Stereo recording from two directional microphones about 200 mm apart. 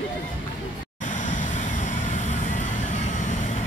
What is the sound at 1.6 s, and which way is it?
Vehicle, 35° left (ahead or behind).